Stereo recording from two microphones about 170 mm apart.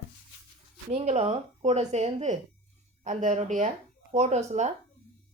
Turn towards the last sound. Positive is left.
turn(degrees=-40)  # may be behind; listen again after turning